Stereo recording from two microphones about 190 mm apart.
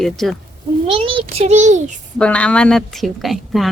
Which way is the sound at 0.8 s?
30° right (ahead or behind).